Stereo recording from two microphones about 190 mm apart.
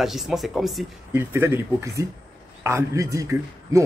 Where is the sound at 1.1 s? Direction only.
15° right (ahead or behind).